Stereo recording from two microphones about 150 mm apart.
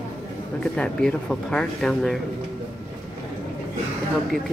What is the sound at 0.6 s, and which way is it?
Speech, 5° left (ahead or behind).